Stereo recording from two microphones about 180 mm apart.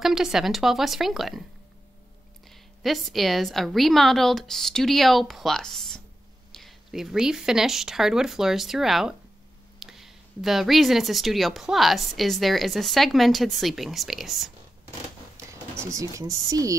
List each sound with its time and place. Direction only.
0.0 s speech: centre (ahead or behind)
2.4 s speech: centre (ahead or behind)
15.8 s speech: 15° right (ahead or behind)